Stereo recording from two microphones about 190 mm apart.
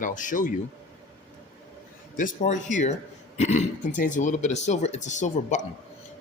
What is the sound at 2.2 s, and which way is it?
Speech, 40° left (ahead or behind).